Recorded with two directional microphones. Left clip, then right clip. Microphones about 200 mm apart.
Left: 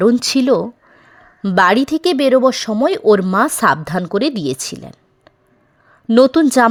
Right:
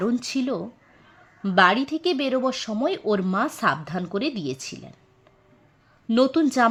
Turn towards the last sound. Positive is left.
turn(degrees=45)  # may be behind; listen again after turning